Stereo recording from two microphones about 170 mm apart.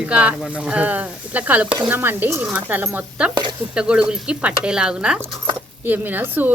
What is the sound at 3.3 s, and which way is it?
Stir, 25° right (ahead or behind).